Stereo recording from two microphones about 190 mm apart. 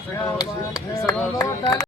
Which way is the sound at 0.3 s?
20° left (ahead or behind).